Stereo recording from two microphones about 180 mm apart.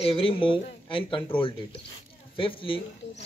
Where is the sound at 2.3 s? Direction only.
30° left (ahead or behind).